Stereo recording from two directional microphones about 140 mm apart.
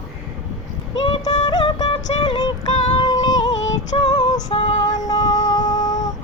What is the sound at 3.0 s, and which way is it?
Female singing, 30° left (ahead or behind).